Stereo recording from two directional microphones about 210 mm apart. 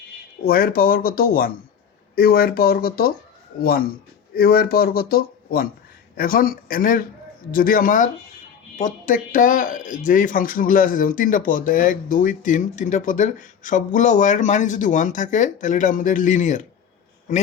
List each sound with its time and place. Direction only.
0.4 s speech: 45° left (ahead or behind)